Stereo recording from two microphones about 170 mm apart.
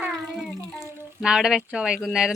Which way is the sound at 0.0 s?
5° right (ahead or behind).